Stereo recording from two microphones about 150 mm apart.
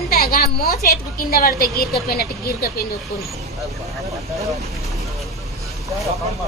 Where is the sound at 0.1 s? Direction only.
90° left.